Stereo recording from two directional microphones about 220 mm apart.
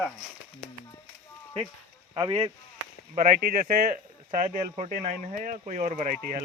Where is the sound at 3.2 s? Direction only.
40° right (ahead or behind).